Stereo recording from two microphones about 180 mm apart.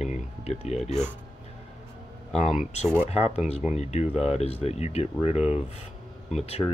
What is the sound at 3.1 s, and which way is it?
Speech, 35° left (ahead or behind).